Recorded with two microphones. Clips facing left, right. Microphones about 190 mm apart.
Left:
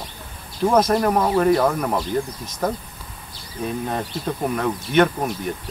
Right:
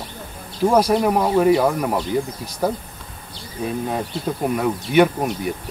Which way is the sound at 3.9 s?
5° right (ahead or behind).